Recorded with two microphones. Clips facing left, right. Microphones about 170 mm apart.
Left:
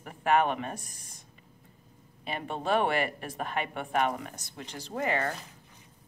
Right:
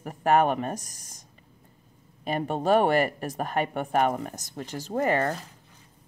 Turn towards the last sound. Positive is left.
turn(degrees=-45)  # may be behind; listen again after turning